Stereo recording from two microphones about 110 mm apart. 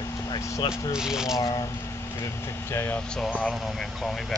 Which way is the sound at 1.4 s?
35° left (ahead or behind).